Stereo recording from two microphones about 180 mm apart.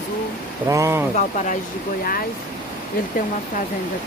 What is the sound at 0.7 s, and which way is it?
Speech, 15° right (ahead or behind).